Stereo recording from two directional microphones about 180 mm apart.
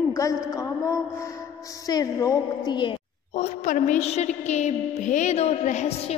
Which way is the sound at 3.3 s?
45° left (ahead or behind).